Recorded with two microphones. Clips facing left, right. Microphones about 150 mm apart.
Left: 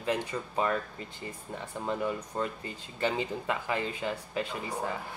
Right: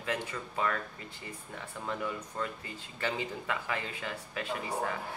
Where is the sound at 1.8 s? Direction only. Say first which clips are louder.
Left 4 dB; 30° left (ahead or behind).